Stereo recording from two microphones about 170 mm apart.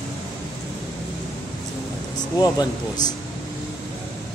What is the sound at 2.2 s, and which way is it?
Speech, 25° left (ahead or behind).